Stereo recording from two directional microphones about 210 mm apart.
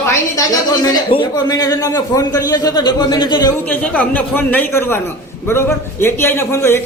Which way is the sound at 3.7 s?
10° left (ahead or behind).